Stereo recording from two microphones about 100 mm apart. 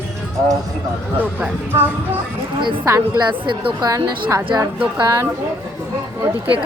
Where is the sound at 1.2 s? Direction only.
15° right (ahead or behind).